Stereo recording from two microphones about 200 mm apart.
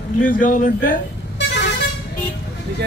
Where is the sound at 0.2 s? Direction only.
40° left (ahead or behind).